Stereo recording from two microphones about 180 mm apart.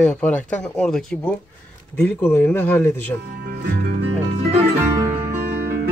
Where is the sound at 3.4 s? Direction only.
65° right (ahead or behind).